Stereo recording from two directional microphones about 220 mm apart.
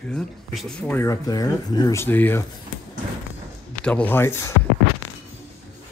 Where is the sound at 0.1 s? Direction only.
5° left (ahead or behind).